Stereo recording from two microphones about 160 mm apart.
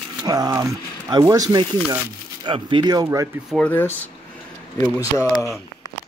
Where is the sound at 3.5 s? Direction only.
5° left (ahead or behind).